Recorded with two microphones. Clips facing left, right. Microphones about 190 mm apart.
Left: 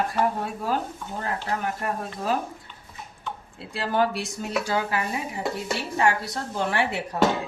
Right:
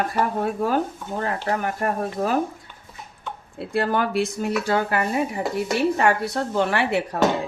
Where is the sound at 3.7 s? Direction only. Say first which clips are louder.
Right 2 dB; 55° right (ahead or behind).